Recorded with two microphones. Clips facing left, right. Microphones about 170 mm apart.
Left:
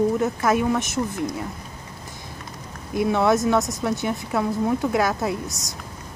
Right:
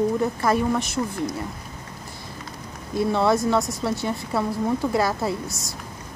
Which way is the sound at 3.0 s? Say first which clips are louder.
Left 1 dB; 15° left (ahead or behind).